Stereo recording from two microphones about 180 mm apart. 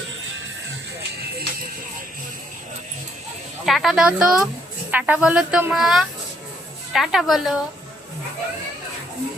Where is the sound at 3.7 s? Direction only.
Centre (ahead or behind).